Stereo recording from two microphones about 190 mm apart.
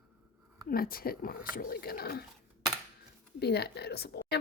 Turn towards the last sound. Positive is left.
turn(degrees=55)  # may be behind; listen again after turning